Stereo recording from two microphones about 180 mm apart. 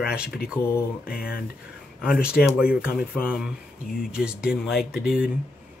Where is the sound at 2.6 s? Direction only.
5° right (ahead or behind).